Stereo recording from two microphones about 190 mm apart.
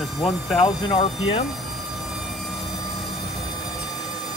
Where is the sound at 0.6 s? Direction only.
30° left (ahead or behind).